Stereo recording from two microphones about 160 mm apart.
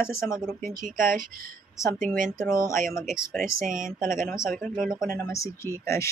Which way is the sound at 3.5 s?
55° right (ahead or behind).